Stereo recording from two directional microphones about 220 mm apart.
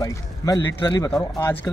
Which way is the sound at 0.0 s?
15° left (ahead or behind).